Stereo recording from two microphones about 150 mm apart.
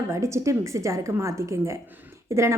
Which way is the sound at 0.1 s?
20° right (ahead or behind).